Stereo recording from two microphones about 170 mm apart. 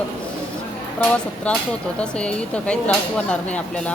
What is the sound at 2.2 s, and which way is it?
Speech, 5° left (ahead or behind).